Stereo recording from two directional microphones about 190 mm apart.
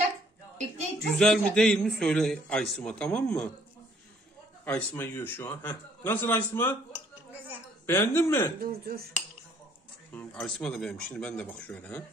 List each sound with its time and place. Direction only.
1.1 s a man's voice: 5° left (ahead or behind)
4.6 s a man's voice: 10° left (ahead or behind)
7.8 s a man's voice: 10° left (ahead or behind)
8.5 s speech: 55° right (ahead or behind)
10.1 s a man's voice: 5° left (ahead or behind)